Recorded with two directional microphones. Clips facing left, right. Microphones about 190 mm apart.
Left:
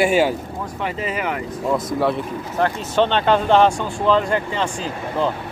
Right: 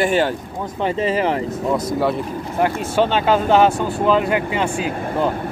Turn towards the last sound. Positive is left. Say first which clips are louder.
# right 2 dB
turn(degrees=-10)  # may be behind; listen again after turning